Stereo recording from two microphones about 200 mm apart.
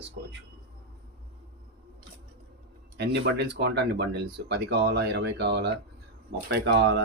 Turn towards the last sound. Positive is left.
turn(degrees=-60)  # may be behind; listen again after turning